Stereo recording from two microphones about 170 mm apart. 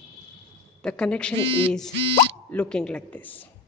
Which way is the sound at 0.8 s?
5° left (ahead or behind).